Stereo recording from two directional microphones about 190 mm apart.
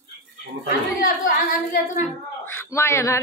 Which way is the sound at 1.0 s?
50° left (ahead or behind).